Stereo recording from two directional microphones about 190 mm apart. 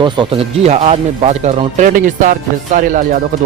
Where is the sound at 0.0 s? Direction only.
25° right (ahead or behind); by 3.2 s 45° right (ahead or behind).